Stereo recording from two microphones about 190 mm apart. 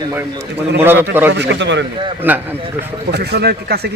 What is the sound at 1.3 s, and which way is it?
Speech, 65° right (ahead or behind).